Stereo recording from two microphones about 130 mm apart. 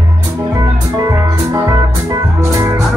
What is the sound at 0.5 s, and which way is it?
Music, 25° right (ahead or behind).